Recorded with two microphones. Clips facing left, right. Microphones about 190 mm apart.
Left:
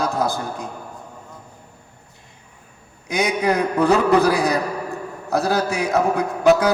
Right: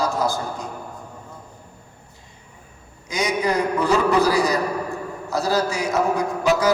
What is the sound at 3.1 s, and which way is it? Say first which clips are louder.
A man's voice: left 2 dB; 60° left (ahead or behind).